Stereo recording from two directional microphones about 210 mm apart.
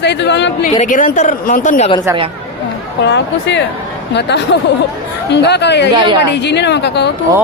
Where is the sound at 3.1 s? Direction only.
55° left (ahead or behind).